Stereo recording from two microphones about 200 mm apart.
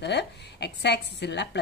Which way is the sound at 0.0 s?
60° left (ahead or behind).